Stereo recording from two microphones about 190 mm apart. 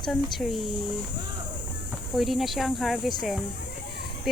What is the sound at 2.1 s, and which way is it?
Speech, centre (ahead or behind).